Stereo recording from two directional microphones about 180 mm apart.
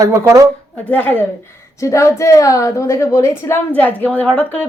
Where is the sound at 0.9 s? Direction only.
10° left (ahead or behind).